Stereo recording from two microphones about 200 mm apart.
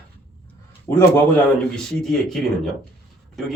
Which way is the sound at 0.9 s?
15° left (ahead or behind).